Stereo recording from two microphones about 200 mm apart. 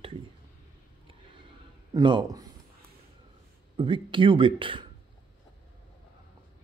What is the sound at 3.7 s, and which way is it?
Speech, 25° right (ahead or behind).